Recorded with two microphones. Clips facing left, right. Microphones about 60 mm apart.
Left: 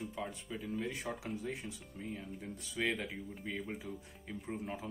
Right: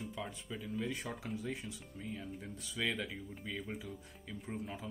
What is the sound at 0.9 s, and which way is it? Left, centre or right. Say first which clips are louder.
Speech: left 1 dB; centre.